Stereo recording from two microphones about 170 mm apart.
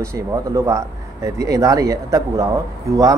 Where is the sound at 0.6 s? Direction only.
15° right (ahead or behind).